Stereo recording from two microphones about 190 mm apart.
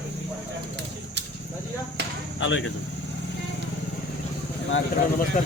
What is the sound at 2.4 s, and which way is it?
Speech, 80° left.